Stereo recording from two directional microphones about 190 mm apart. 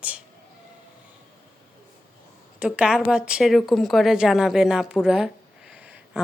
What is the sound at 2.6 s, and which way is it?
Speech, 5° right (ahead or behind).